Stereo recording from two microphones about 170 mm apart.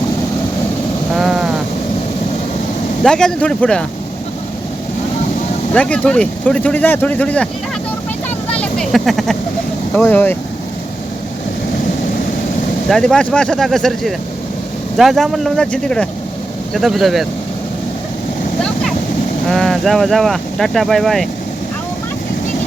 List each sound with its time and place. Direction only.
1.1 s sheep: centre (ahead or behind)
3.0 s speech: 5° left (ahead or behind)
5.7 s speech: 5° left (ahead or behind)
8.6 s vehicle: centre (ahead or behind)
9.9 s speech: 10° left (ahead or behind)
12.9 s speech: 5° left (ahead or behind)
19.5 s speech: centre (ahead or behind)